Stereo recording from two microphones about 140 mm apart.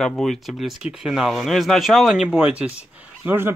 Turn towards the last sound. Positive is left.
turn(degrees=-15)  # may be behind; listen again after turning